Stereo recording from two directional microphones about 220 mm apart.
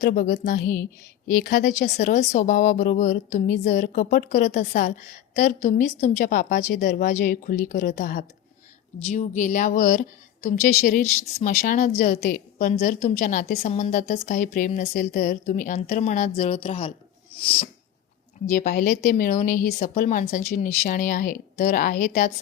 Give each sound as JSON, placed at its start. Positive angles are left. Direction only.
{"t": 0.0, "sound": "speech", "side_deg": 35}
{"t": 18.5, "sound": "speech", "side_deg": 40}